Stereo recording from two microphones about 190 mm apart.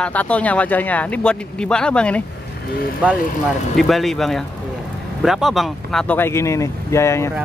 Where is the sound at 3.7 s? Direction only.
Centre (ahead or behind).